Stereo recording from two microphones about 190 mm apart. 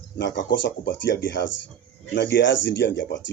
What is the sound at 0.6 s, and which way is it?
Speech, 70° left (ahead or behind).